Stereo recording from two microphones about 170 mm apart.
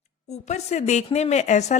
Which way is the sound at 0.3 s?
40° left (ahead or behind).